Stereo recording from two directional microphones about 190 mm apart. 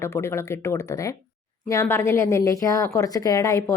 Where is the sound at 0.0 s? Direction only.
15° left (ahead or behind).